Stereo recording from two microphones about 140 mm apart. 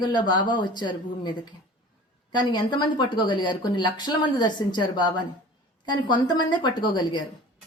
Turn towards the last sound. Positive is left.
turn(degrees=35)  # may be behind; listen again after turning